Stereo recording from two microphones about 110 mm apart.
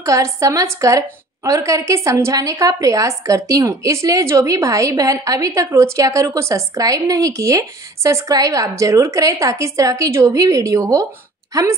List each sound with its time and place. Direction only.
0.0 s a woman's voice: 30° right (ahead or behind)